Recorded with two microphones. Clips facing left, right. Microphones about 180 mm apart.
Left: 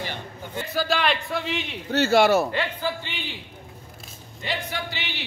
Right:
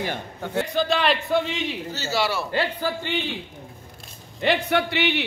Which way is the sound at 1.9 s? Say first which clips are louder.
Left 10 dB; 55° left (ahead or behind).